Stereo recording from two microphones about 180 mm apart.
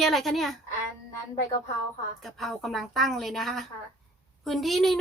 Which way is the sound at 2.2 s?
Centre (ahead or behind).